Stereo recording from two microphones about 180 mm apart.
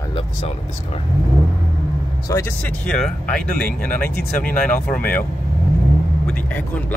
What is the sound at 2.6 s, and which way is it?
Speech, 5° left (ahead or behind).